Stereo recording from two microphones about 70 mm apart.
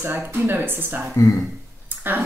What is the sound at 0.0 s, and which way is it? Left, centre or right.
Speech, right.